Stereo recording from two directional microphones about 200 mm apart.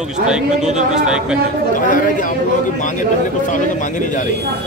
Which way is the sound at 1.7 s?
45° left (ahead or behind).